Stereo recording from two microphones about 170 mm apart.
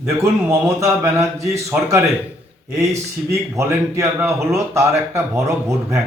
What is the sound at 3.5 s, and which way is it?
Speech, 15° right (ahead or behind).